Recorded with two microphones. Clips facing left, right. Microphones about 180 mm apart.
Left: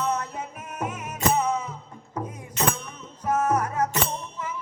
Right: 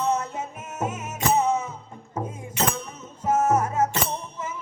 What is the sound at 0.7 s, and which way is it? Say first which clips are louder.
Music: right 2 dB; 25° right (ahead or behind).